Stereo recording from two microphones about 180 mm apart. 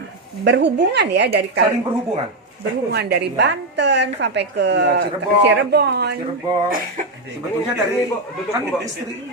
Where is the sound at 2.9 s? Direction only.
65° right (ahead or behind).